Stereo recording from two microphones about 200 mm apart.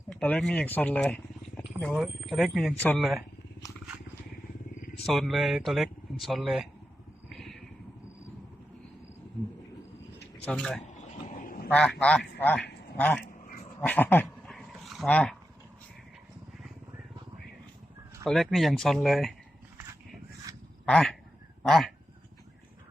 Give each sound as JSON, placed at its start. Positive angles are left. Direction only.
{"t": 0.1, "sound": "speech", "side_deg": 5}
{"t": 5.0, "sound": "speech", "side_deg": 0}
{"t": 7.3, "sound": "vehicle", "side_deg": 0}
{"t": 10.4, "sound": "speech", "side_deg": 5}
{"t": 10.8, "sound": "duck", "side_deg": 40}
{"t": 11.7, "sound": "speech", "side_deg": 5}
{"t": 13.8, "sound": "dog", "side_deg": 10}
{"t": 18.3, "sound": "speech", "side_deg": 0}
{"t": 20.8, "sound": "duck", "side_deg": 5}
{"t": 21.6, "sound": "speech", "side_deg": 0}